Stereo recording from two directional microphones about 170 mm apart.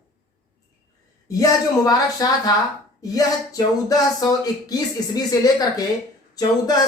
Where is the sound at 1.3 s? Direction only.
20° left (ahead or behind).